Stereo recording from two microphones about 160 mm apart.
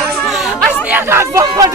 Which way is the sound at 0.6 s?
10° right (ahead or behind).